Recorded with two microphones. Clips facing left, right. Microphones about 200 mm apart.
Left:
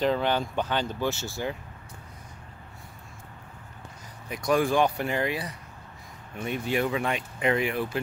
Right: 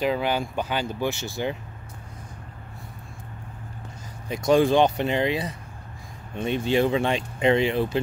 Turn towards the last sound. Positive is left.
turn(degrees=-25)  # may be behind; listen again after turning